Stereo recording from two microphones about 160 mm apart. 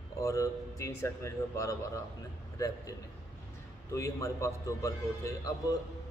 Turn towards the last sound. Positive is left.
turn(degrees=20)  # may be behind; listen again after turning